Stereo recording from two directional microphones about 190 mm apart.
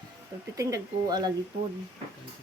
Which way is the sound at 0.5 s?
15° right (ahead or behind).